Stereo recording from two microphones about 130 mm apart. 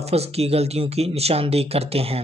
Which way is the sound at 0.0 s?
50° right (ahead or behind).